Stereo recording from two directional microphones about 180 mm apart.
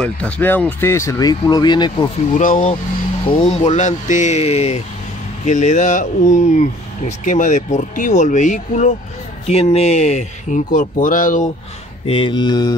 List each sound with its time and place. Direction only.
0.0 s speech: 10° left (ahead or behind); by 2.0 s 25° left (ahead or behind)
2.3 s speech: 45° left (ahead or behind)
12.1 s mantra: 30° left (ahead or behind)